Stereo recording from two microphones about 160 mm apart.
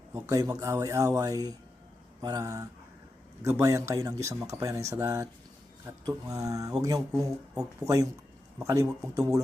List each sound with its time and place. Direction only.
0.3 s speech: 20° right (ahead or behind)